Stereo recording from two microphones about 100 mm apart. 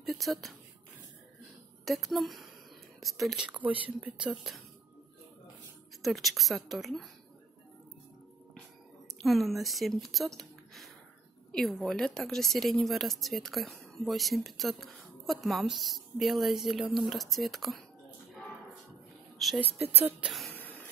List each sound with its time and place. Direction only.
0.0 s speech: centre (ahead or behind)
1.9 s a woman's voice: centre (ahead or behind)
3.4 s speech: 15° right (ahead or behind)
6.0 s a woman's voice: centre (ahead or behind)
9.2 s a woman's voice: centre (ahead or behind)
19.3 s a sound: centre (ahead or behind)
19.8 s speech: 20° right (ahead or behind)
20.2 s speech: centre (ahead or behind)
20.5 s cough: 15° left (ahead or behind)